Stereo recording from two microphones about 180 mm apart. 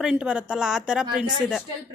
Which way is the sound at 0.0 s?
5° right (ahead or behind).